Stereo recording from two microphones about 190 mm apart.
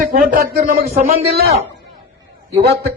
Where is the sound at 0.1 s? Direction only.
50° right (ahead or behind).